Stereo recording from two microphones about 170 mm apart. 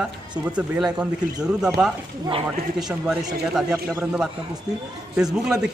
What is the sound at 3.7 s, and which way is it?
Speech, 15° right (ahead or behind).